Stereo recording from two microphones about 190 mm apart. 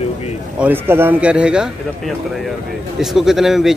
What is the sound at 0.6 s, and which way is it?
Speech, 10° right (ahead or behind).